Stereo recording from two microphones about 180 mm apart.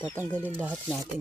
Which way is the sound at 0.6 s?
5° right (ahead or behind).